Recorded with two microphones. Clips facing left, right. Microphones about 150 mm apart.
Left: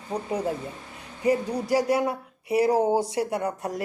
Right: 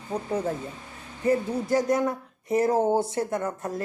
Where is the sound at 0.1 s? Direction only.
15° left (ahead or behind).